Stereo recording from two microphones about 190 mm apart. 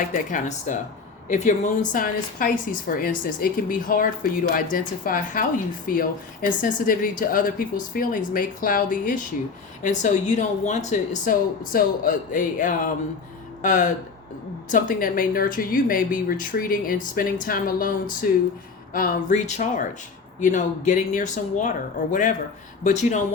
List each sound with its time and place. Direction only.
0.1 s a woman's voice: 40° left (ahead or behind)